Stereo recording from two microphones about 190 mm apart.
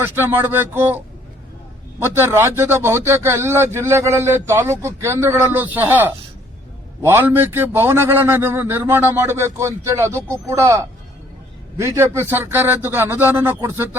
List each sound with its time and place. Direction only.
0.0 s a man's voice: 10° right (ahead or behind)
2.0 s a man's voice: 10° right (ahead or behind)